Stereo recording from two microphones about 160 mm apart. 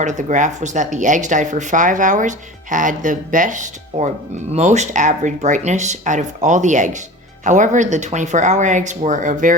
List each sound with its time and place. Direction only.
0.0 s speech: 50° right (ahead or behind)